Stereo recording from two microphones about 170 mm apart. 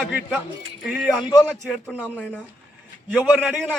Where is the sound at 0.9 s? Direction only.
5° right (ahead or behind).